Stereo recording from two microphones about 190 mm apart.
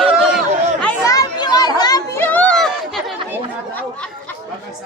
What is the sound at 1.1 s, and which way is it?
Children playing, 20° left (ahead or behind).